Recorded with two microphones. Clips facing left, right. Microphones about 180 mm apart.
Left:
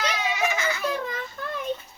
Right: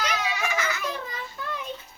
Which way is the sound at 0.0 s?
25° left (ahead or behind).